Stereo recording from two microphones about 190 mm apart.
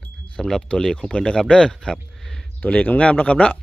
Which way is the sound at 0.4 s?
5° left (ahead or behind).